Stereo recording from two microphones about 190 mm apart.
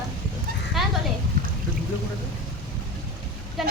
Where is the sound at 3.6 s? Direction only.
Centre (ahead or behind).